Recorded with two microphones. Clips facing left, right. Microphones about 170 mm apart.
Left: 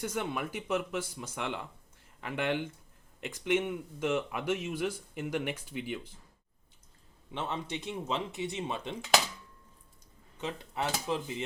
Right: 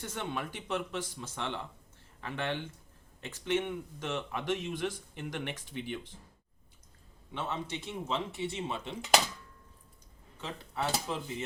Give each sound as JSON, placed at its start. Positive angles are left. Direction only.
{"t": 0.0, "sound": "speech", "side_deg": 10}
{"t": 7.3, "sound": "speech", "side_deg": 20}
{"t": 10.3, "sound": "speech", "side_deg": 20}